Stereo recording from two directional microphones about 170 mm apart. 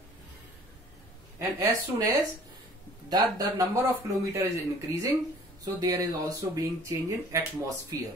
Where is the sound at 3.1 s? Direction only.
20° right (ahead or behind).